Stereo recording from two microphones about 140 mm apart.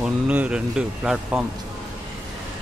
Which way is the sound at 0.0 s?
10° right (ahead or behind).